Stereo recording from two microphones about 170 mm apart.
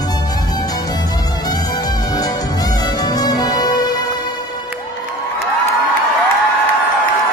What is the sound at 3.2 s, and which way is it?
Music, 20° left (ahead or behind).